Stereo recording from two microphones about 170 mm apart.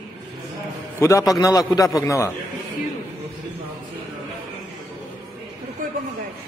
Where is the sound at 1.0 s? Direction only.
15° left (ahead or behind).